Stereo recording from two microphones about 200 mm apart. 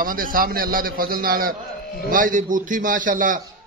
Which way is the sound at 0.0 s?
45° right (ahead or behind).